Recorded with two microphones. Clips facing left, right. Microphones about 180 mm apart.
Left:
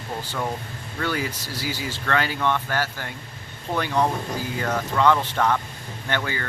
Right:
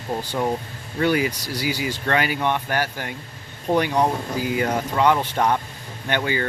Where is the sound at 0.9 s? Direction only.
15° right (ahead or behind).